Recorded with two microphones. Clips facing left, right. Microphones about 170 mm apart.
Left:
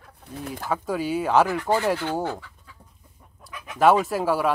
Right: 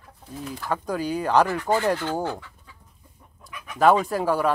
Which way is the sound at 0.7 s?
5° left (ahead or behind).